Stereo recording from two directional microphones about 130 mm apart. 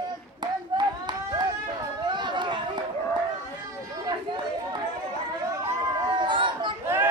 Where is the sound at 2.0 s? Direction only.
35° right (ahead or behind).